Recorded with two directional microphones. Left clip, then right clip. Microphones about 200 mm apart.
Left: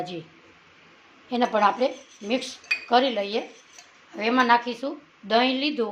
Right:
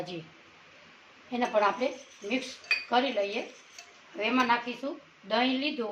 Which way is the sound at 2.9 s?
55° left (ahead or behind).